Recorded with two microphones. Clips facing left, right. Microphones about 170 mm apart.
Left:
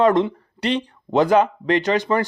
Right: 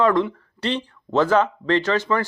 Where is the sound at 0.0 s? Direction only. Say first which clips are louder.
Left 2 dB; 20° left (ahead or behind).